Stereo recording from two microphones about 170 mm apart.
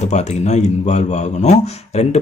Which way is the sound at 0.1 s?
45° left (ahead or behind).